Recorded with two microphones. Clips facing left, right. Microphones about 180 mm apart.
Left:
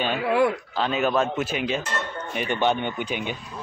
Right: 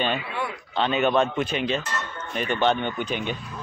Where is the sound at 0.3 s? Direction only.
90° left.